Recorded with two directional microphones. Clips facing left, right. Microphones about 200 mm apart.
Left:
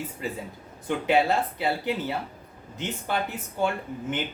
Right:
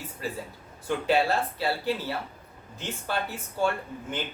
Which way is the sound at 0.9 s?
20° left (ahead or behind).